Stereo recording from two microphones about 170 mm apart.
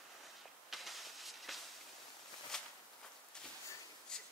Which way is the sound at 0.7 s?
Centre (ahead or behind).